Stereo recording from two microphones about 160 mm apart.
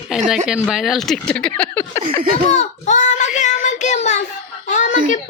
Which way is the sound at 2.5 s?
45° left (ahead or behind).